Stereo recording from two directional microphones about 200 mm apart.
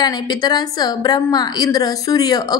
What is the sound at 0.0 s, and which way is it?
A woman's voice, 20° left (ahead or behind).